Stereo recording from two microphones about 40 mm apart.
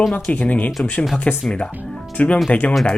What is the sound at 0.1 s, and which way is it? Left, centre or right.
Speech, left.